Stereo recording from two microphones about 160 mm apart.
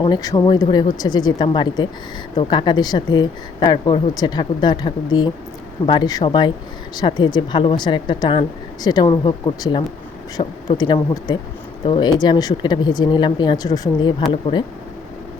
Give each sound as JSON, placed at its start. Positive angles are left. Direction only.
{"t": 0.0, "sound": "speech", "side_deg": 25}
{"t": 10.4, "sound": "speech", "side_deg": 35}
{"t": 10.8, "sound": "speech", "side_deg": 25}